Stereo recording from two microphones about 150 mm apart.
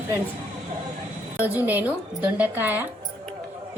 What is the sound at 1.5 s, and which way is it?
A woman's voice, 10° right (ahead or behind).